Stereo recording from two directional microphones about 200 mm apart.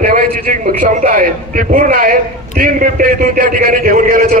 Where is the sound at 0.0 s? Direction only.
45° right (ahead or behind).